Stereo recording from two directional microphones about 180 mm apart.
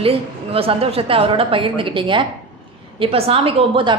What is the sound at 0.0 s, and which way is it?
A woman's voice, 30° right (ahead or behind).